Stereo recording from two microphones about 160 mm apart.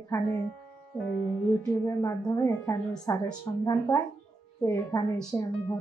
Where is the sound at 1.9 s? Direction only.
15° left (ahead or behind).